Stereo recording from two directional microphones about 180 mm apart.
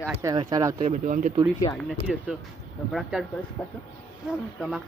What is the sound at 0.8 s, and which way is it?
Speech, 45° right (ahead or behind).